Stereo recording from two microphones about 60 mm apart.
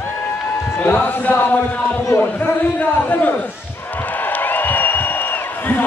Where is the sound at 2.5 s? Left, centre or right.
Left.